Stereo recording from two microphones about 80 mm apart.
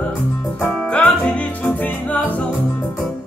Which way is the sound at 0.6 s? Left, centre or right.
Centre.